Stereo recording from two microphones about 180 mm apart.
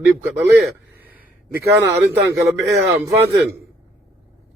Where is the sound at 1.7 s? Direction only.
15° right (ahead or behind).